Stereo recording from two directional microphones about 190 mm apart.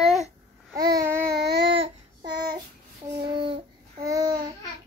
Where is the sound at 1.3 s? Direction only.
65° right (ahead or behind).